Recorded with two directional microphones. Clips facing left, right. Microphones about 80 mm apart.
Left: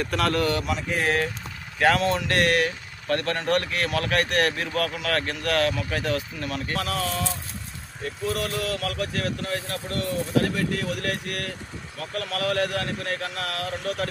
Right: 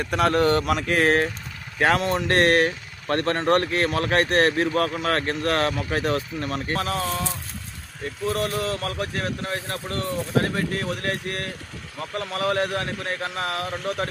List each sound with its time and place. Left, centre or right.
0.0 s speech: right
0.6 s speech: right
1.0 s speech: right
1.8 s speech: right
8.3 s speech: right